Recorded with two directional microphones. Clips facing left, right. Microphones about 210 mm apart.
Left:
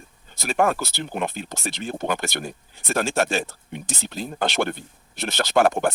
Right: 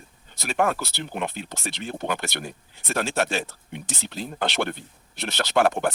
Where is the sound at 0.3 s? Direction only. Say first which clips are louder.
Left 2 dB; 45° left (ahead or behind).